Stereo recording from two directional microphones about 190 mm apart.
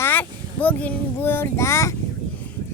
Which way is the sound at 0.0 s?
10° left (ahead or behind).